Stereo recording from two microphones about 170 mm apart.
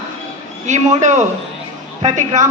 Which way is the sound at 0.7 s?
45° right (ahead or behind).